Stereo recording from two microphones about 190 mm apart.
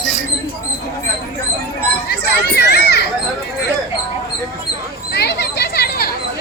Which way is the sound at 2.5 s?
60° left (ahead or behind).